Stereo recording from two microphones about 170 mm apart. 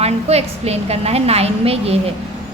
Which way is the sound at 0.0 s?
40° right (ahead or behind).